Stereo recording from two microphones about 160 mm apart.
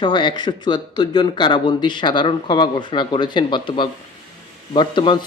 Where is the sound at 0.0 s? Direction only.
30° left (ahead or behind).